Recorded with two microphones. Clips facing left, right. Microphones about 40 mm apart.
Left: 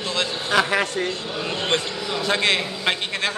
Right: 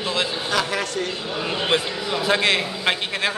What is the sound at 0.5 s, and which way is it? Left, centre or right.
Speech, left.